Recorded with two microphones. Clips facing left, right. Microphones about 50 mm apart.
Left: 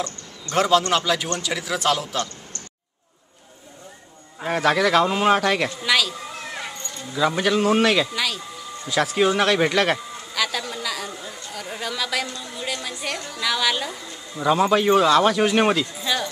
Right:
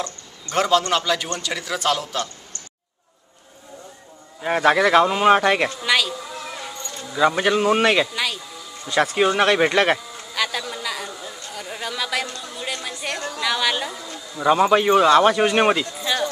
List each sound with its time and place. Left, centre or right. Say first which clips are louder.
0.6 s a man's voice: even; centre
4.5 s speech: right 3 dB; centre
5.8 s a man's voice: right 1 dB; centre
7.3 s speech: right 1 dB; centre
9.1 s speech: even; centre
10.7 s chatter: even; centre
12.5 s a sound: even; centre
13.4 s speech: even; centre